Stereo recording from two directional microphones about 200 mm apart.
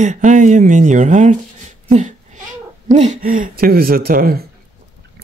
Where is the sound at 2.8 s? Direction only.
35° right (ahead or behind).